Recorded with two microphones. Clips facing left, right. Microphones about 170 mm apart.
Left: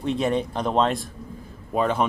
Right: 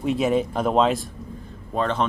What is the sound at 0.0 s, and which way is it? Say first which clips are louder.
Speech: right 2 dB; 5° right (ahead or behind).